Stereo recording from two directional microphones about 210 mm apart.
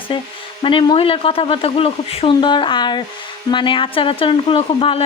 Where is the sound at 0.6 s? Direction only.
25° left (ahead or behind).